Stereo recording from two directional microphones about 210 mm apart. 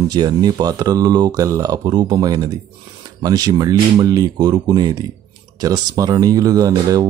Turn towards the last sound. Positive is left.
turn(degrees=-15)  # may be behind; listen again after turning